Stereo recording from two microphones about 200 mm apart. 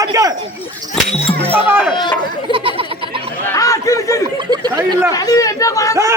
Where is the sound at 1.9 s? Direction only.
20° left (ahead or behind).